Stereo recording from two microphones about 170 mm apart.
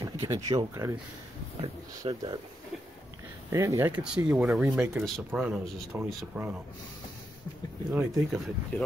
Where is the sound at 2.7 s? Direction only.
Centre (ahead or behind).